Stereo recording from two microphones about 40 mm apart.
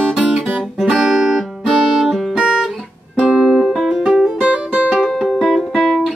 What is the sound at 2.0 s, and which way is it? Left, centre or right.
Music, centre.